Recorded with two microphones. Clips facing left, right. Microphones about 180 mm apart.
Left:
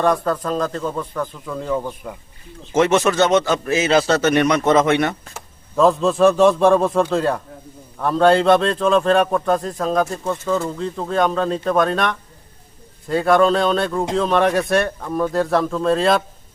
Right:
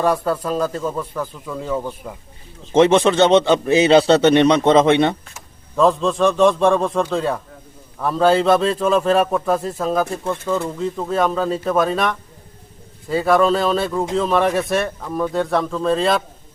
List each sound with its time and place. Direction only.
0.0 s speech: 5° right (ahead or behind)
2.7 s a man's voice: 25° right (ahead or behind)
5.7 s speech: centre (ahead or behind)